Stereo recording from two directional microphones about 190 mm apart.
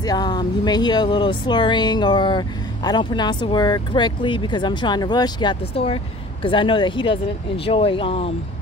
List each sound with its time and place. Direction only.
0.0 s speech: 20° left (ahead or behind)